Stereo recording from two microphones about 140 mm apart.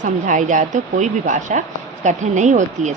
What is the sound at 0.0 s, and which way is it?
A woman's voice, 65° right (ahead or behind).